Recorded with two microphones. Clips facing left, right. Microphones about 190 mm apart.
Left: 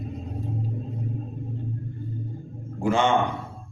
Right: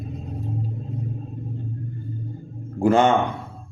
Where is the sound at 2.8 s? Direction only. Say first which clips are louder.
Right 5 dB; 40° right (ahead or behind).